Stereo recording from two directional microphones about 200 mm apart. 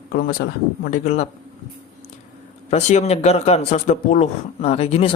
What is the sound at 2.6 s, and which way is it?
Speech, 35° left (ahead or behind).